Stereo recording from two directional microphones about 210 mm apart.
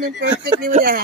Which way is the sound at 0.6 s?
40° right (ahead or behind).